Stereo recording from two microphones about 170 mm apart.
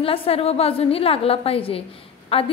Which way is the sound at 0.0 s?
35° left (ahead or behind).